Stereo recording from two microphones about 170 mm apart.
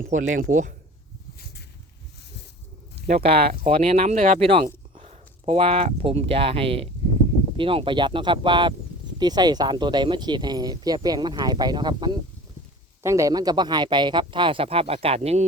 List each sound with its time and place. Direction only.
0.0 s speech: 50° right (ahead or behind)
3.1 s speech: 35° right (ahead or behind)